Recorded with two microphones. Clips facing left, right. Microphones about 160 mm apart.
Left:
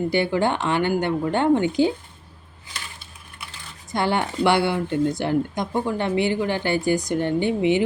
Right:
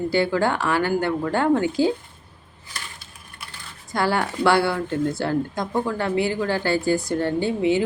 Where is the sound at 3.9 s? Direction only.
20° left (ahead or behind).